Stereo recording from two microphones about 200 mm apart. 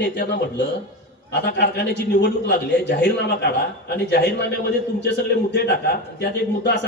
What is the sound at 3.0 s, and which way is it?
A man's voice, 55° left (ahead or behind).